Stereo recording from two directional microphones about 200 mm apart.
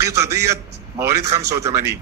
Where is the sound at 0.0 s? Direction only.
15° right (ahead or behind).